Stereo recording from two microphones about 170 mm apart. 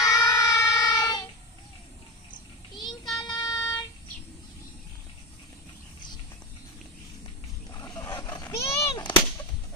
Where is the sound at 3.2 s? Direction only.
25° left (ahead or behind).